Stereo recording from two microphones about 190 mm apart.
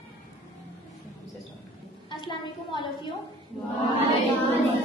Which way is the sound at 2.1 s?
25° left (ahead or behind).